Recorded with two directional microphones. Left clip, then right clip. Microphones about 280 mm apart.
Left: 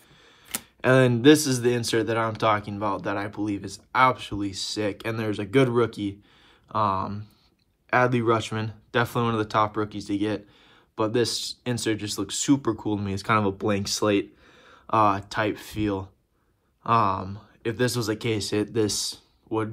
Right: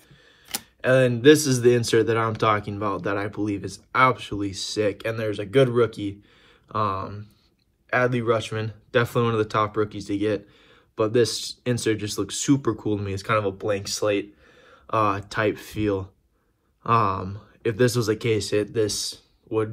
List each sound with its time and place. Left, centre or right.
0.7 s speech: left
1.3 s speech: centre